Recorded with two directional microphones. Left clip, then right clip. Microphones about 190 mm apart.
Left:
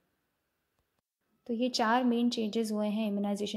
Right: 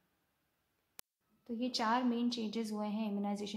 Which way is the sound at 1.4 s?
30° left (ahead or behind).